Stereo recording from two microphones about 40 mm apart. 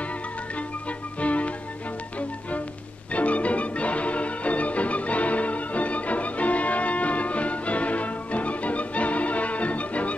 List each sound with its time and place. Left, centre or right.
1.2 s music: left
3.1 s music: left